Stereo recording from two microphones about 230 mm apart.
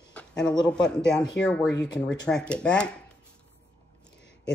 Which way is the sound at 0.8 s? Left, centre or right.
Centre.